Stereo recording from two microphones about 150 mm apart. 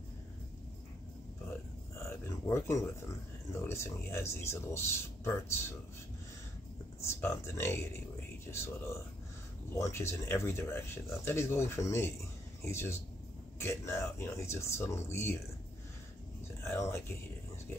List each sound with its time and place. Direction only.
2.0 s speech: 15° left (ahead or behind)
7.0 s speech: 15° left (ahead or behind)
16.6 s speech: 20° left (ahead or behind)